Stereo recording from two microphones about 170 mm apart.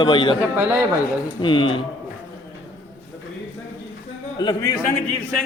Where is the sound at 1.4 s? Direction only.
30° left (ahead or behind).